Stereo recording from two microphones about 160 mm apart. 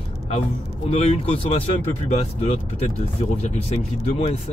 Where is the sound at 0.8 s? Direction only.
40° left (ahead or behind).